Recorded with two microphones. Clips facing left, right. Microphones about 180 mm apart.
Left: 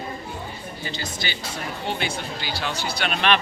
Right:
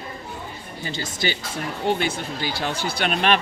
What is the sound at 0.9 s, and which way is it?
Speech, 50° right (ahead or behind).